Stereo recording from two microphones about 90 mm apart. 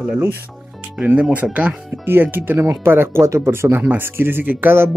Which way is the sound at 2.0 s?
25° right (ahead or behind).